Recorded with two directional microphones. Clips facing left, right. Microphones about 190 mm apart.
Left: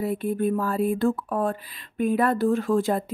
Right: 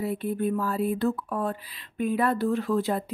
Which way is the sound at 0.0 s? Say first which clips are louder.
Left 3 dB; 50° left (ahead or behind).